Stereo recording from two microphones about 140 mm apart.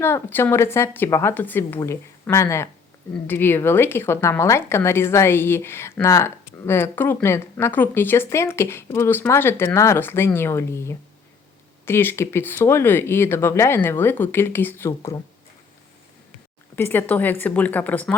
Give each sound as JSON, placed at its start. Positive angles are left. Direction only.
{"t": 0.0, "sound": "a woman's voice", "side_deg": 15}
{"t": 16.7, "sound": "a woman's voice", "side_deg": 15}